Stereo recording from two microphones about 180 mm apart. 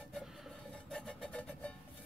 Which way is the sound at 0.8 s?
Centre (ahead or behind).